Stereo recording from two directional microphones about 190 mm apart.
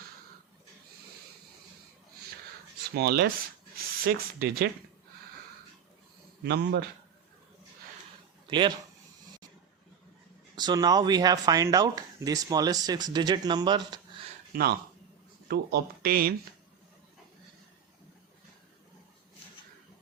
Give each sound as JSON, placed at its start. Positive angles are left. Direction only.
{"t": 2.9, "sound": "speech", "side_deg": -60}
{"t": 3.8, "sound": "a sound", "side_deg": -50}
{"t": 6.4, "sound": "speech", "side_deg": -60}
{"t": 8.4, "sound": "speech", "side_deg": -25}
{"t": 10.5, "sound": "speech", "side_deg": -20}
{"t": 14.5, "sound": "speech", "side_deg": -55}